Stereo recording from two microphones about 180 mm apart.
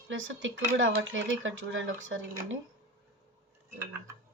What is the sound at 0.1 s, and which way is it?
Speech, 90° right.